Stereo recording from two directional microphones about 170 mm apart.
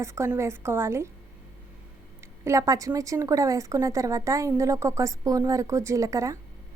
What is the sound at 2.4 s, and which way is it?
Speech, 15° right (ahead or behind).